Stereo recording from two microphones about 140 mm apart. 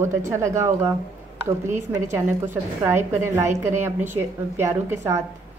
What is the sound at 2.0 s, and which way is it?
A woman's voice, 15° right (ahead or behind).